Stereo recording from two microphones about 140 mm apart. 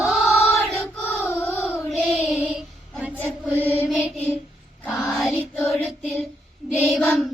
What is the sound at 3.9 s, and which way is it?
Music, 10° right (ahead or behind).